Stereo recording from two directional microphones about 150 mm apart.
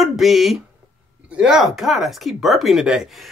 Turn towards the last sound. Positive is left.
turn(degrees=-5)  # may be behind; listen again after turning